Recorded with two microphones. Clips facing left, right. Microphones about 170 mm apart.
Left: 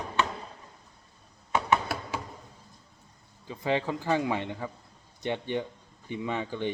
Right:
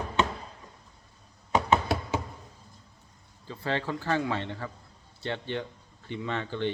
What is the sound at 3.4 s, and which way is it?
A man's voice, 15° left (ahead or behind).